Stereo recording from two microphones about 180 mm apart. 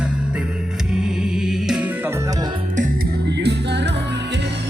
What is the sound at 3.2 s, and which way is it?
Music, 70° right (ahead or behind).